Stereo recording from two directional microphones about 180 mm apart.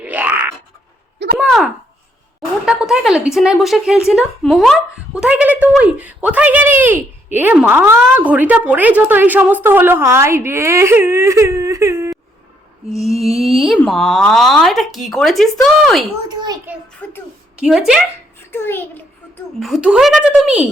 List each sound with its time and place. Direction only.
0.0 s a sound: 10° right (ahead or behind)
1.2 s a sound: 70° right (ahead or behind)
2.4 s speech: 5° right (ahead or behind)
13.1 s a sound: 35° right (ahead or behind)
13.4 s speech: centre (ahead or behind)
16.3 s a child's voice: 25° right (ahead or behind)
17.0 s a child's voice: 10° left (ahead or behind)
17.6 s speech: 5° right (ahead or behind)
18.5 s a child's voice: 10° left (ahead or behind)
19.5 s speech: centre (ahead or behind)